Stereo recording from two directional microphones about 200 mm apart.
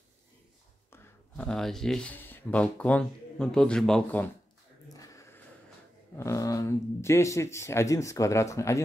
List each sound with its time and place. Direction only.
0.9 s speech: 5° left (ahead or behind)
4.8 s a sound: 15° left (ahead or behind)
6.1 s speech: 15° left (ahead or behind)